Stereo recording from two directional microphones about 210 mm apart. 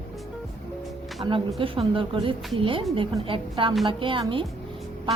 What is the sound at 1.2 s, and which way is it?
A woman's voice, 20° right (ahead or behind).